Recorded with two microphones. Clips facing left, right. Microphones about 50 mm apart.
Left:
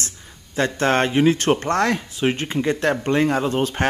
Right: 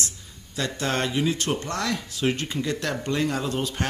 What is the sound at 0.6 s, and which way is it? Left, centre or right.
Speech, left.